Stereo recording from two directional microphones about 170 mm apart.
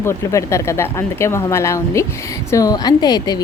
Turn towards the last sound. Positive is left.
turn(degrees=25)  # may be behind; listen again after turning